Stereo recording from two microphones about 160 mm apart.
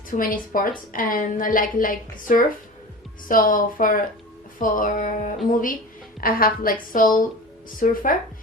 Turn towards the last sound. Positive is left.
turn(degrees=55)  # may be behind; listen again after turning